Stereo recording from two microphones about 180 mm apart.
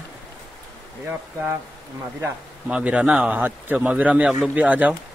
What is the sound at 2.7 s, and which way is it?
A man's voice, 5° right (ahead or behind).